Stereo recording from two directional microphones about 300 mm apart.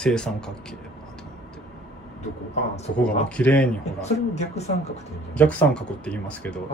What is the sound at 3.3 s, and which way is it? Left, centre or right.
Speech, centre.